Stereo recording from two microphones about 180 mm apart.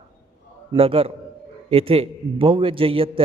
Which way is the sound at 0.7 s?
30° right (ahead or behind).